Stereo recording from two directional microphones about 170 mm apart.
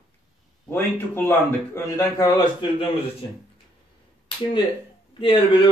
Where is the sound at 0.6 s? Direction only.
15° left (ahead or behind).